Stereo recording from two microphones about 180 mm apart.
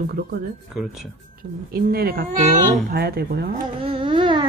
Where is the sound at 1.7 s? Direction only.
60° right (ahead or behind).